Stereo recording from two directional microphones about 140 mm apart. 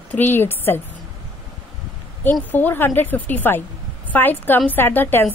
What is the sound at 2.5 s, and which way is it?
A woman's voice, 15° left (ahead or behind).